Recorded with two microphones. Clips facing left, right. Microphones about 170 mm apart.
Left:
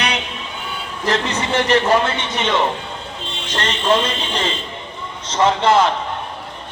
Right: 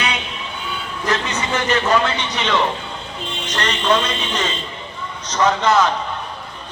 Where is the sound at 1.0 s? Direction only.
30° left (ahead or behind).